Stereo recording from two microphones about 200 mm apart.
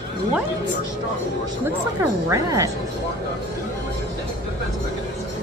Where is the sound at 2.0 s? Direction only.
15° right (ahead or behind).